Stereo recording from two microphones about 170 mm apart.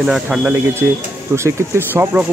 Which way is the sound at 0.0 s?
5° right (ahead or behind).